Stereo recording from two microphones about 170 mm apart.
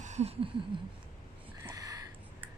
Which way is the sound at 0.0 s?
40° right (ahead or behind).